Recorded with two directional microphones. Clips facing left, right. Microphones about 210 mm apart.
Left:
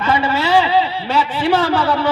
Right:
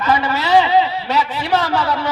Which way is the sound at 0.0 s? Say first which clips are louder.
Left 1 dB; 30° left (ahead or behind).